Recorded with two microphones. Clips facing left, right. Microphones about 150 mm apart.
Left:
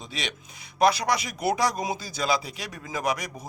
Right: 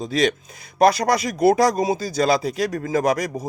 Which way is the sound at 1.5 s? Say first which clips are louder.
Right 8 dB; 40° right (ahead or behind).